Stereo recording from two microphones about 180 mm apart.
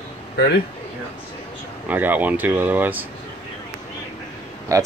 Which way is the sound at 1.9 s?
10° right (ahead or behind).